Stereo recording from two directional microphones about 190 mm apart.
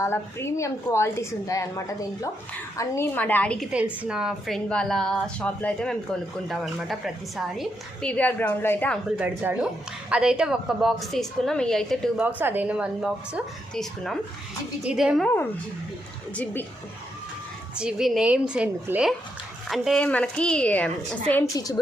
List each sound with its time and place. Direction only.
0.0 s a woman's voice: 15° left (ahead or behind)
3.7 s a woman's voice: 5° right (ahead or behind); by 9.0 s 10° left (ahead or behind)
9.0 s a woman's voice: 5° right (ahead or behind)
12.4 s a woman's voice: 10° right (ahead or behind)
16.3 s a woman's voice: 10° left (ahead or behind)
17.7 s a woman's voice: 5° right (ahead or behind)
21.5 s a woman's voice: 15° left (ahead or behind)